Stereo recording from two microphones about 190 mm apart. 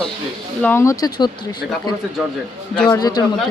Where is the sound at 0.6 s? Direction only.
15° left (ahead or behind).